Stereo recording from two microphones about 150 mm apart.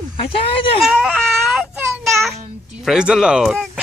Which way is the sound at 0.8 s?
5° right (ahead or behind).